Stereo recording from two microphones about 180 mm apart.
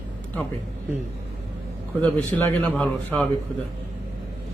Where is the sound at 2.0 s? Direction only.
10° left (ahead or behind).